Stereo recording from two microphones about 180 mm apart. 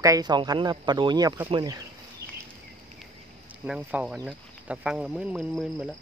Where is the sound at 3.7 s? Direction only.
10° right (ahead or behind).